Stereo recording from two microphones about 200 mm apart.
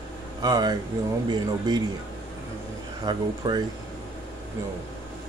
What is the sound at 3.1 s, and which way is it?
Speech, 20° right (ahead or behind).